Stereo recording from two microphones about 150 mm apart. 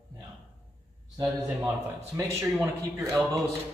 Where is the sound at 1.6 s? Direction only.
20° right (ahead or behind).